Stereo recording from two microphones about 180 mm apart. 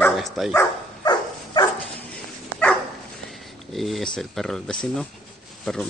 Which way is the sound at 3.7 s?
Centre (ahead or behind).